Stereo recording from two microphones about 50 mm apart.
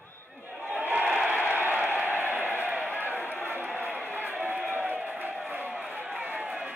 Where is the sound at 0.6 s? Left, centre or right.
Right.